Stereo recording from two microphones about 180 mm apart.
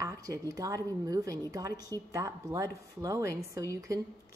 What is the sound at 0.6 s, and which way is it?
Speech, 20° right (ahead or behind).